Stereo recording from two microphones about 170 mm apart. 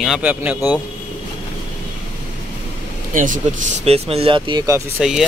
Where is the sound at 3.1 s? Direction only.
50° right (ahead or behind); by 4.8 s 20° right (ahead or behind).